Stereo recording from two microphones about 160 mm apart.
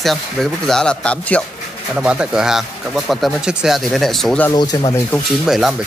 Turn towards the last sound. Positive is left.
turn(degrees=0)  # may be behind; listen again after turning